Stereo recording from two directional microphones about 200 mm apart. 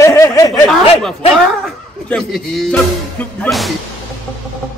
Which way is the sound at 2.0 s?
5° left (ahead or behind).